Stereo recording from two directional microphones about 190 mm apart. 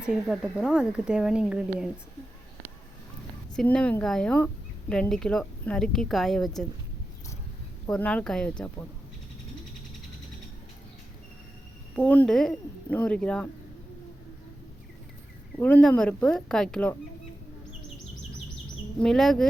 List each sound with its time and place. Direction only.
0.0 s speech: 5° right (ahead or behind)
3.5 s speech: 5° left (ahead or behind)
7.9 s speech: 5° left (ahead or behind)
11.9 s speech: 5° left (ahead or behind)
15.5 s speech: 5° left (ahead or behind)
19.0 s speech: centre (ahead or behind)